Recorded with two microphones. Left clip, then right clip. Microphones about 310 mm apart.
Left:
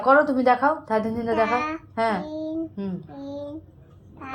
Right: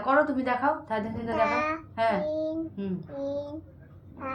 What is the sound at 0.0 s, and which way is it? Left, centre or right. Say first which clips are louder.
Speech: left 7 dB; centre.